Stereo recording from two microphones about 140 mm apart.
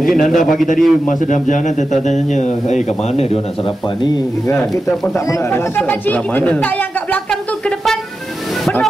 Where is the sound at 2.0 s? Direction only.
55° left (ahead or behind).